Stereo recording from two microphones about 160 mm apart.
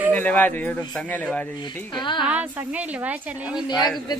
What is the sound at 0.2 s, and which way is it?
Speech, 10° left (ahead or behind).